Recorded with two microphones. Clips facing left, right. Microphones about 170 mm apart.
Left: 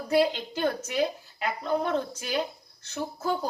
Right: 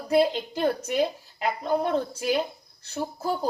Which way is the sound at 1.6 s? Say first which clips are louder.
Right 2 dB; 35° right (ahead or behind).